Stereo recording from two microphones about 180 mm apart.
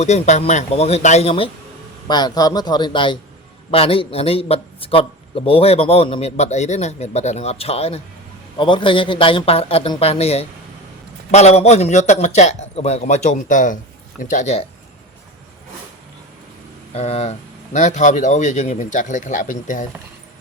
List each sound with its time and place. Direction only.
0.0 s a man's voice: 40° left (ahead or behind)
16.9 s a man's voice: 35° left (ahead or behind)